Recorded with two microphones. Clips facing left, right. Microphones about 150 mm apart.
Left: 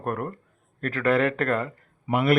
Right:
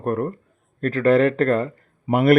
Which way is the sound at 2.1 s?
45° right (ahead or behind).